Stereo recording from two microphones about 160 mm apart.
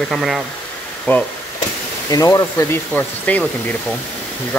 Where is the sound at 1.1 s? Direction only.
10° left (ahead or behind).